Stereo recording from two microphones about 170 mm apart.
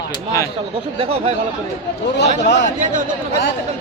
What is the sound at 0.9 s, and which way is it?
Speech, 35° right (ahead or behind).